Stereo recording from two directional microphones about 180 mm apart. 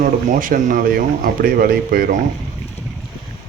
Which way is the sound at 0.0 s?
50° right (ahead or behind).